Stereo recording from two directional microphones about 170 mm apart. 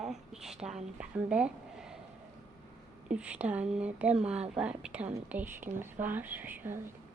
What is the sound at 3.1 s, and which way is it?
Speech, 5° right (ahead or behind).